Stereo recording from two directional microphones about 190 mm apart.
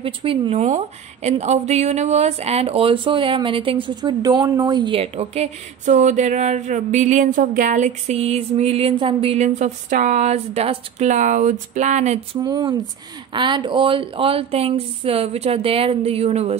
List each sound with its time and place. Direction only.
0.0 s a woman's voice: 30° right (ahead or behind)
12.4 s a woman's voice: 20° right (ahead or behind)